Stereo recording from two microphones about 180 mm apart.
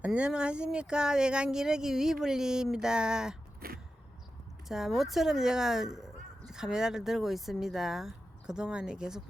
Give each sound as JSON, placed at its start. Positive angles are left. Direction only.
{"t": 0.0, "sound": "speech", "side_deg": -5}
{"t": 3.6, "sound": "vehicle", "side_deg": -55}
{"t": 4.7, "sound": "speech", "side_deg": 0}